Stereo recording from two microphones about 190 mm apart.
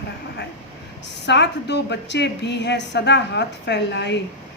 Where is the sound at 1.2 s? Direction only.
65° left (ahead or behind).